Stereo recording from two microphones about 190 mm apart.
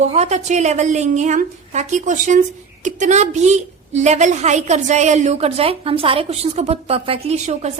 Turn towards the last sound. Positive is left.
turn(degrees=-35)  # may be behind; listen again after turning